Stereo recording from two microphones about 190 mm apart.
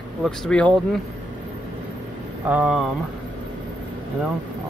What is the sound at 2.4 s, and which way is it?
Speech, 5° right (ahead or behind).